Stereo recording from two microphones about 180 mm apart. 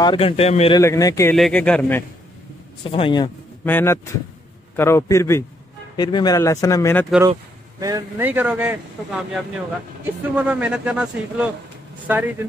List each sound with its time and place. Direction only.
0.0 s speech: 30° left (ahead or behind)
0.7 s speech: 20° left (ahead or behind)
1.3 s speech: 5° left (ahead or behind)
2.8 s a man's voice: 30° left (ahead or behind)
3.6 s speech: 10° left (ahead or behind)
7.8 s speech: 15° right (ahead or behind)